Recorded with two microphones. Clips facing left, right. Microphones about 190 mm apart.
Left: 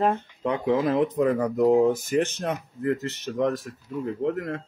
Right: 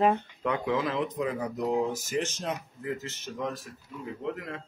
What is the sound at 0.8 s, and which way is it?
Speech, 55° left (ahead or behind).